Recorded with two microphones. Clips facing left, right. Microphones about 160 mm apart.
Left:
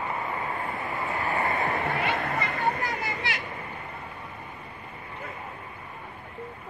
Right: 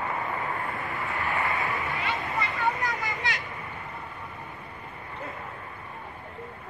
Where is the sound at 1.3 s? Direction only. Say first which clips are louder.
Left 3 dB; 45° left (ahead or behind).